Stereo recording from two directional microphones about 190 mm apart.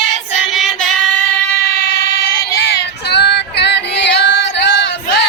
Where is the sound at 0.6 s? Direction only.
Centre (ahead or behind).